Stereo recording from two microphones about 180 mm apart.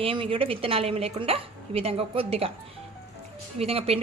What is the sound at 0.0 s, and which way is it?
Speech, 30° right (ahead or behind).